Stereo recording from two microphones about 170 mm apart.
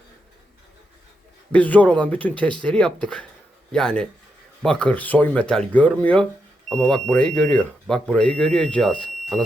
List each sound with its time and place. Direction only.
1.5 s speech: 10° left (ahead or behind)